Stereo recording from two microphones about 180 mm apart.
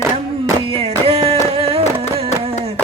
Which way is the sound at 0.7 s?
30° right (ahead or behind).